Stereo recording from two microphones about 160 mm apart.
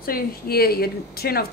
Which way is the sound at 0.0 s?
70° left (ahead or behind).